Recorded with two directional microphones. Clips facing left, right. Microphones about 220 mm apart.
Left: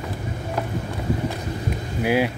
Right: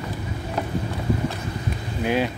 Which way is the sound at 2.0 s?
10° left (ahead or behind).